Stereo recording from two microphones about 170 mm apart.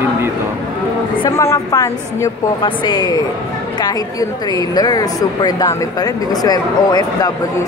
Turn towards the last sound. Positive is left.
turn(degrees=25)  # may be behind; listen again after turning